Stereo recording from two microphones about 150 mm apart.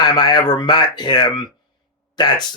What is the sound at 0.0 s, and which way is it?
Speech, 30° left (ahead or behind).